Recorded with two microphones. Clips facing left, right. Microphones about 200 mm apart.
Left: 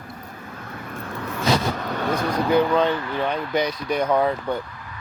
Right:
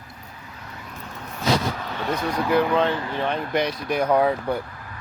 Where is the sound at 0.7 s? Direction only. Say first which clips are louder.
Left 6 dB; 55° left (ahead or behind).